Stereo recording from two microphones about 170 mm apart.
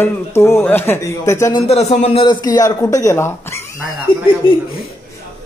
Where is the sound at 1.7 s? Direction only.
40° left (ahead or behind); by 3.6 s 15° left (ahead or behind).